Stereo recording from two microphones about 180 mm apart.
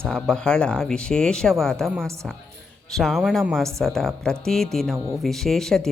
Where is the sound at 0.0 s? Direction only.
5° left (ahead or behind).